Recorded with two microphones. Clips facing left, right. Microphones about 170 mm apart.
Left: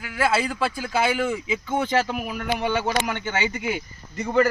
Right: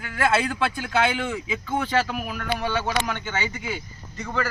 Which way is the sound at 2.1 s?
15° left (ahead or behind).